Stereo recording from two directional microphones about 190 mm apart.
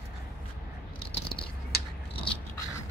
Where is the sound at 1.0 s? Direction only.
30° left (ahead or behind).